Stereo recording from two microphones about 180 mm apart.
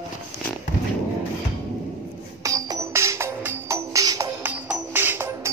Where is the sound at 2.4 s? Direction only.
20° right (ahead or behind).